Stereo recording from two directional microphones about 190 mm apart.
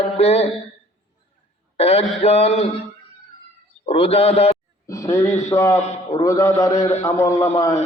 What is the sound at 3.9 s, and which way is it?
Speech, 30° left (ahead or behind).